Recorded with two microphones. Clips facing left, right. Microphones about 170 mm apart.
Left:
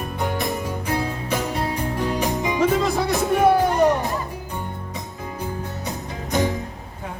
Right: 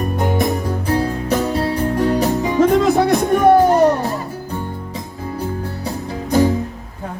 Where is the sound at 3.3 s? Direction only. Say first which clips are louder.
Right 4 dB; 45° right (ahead or behind).